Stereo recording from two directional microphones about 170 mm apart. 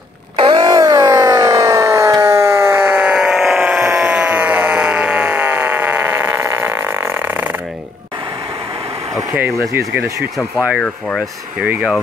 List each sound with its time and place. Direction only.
0.4 s a sound: 25° right (ahead or behind)
9.1 s vehicle: 10° right (ahead or behind)
9.8 s speech: 15° right (ahead or behind)
10.8 s speech: 5° left (ahead or behind)
11.6 s speech: 10° right (ahead or behind)